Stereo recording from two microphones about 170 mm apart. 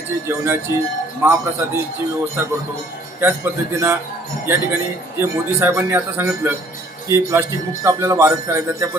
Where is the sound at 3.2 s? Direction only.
10° right (ahead or behind).